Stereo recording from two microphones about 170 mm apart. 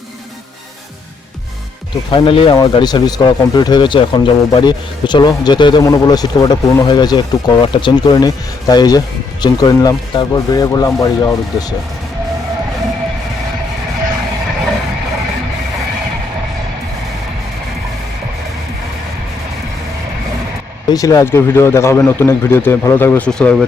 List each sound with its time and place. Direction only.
2.0 s speech: 30° left (ahead or behind)
20.9 s a man's voice: 20° left (ahead or behind)